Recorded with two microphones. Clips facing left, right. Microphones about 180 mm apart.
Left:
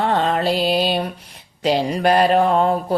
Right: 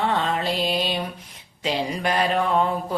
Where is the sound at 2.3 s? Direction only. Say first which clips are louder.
Left 6 dB; 40° left (ahead or behind).